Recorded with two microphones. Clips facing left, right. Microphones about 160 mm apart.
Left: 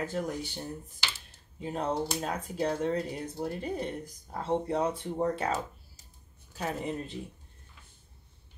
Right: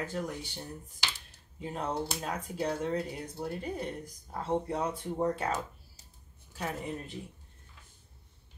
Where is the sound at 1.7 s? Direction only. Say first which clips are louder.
Left 3 dB; 25° left (ahead or behind).